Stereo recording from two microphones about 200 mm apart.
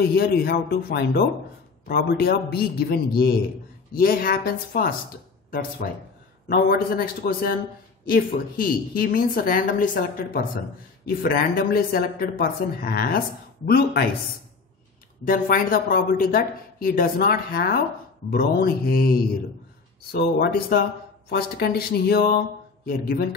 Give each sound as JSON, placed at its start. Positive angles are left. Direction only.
{"t": 0.0, "sound": "speech", "side_deg": 50}
{"t": 15.2, "sound": "speech", "side_deg": 45}